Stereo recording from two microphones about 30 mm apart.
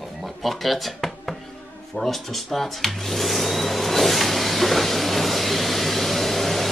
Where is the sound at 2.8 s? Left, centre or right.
Centre.